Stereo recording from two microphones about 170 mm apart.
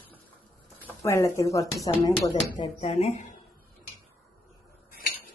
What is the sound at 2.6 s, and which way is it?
Speech, 35° left (ahead or behind).